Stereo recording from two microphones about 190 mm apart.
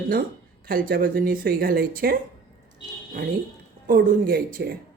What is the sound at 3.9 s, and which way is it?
Speech, 50° right (ahead or behind).